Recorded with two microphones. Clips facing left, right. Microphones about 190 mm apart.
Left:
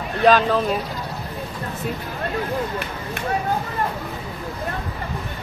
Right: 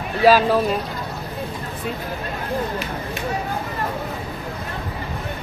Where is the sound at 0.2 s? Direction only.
5° right (ahead or behind).